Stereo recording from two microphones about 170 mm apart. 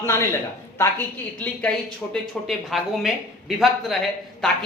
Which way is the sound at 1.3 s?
10° left (ahead or behind).